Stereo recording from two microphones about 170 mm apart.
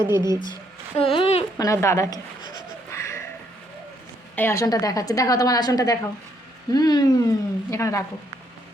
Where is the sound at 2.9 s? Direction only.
15° left (ahead or behind).